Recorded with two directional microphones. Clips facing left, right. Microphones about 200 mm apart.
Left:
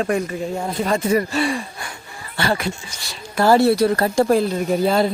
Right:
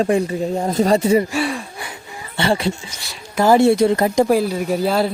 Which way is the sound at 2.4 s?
30° right (ahead or behind).